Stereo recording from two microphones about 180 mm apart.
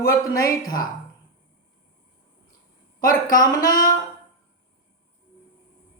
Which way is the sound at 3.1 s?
20° left (ahead or behind).